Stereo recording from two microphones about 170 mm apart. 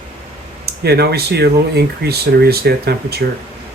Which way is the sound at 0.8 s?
70° right (ahead or behind).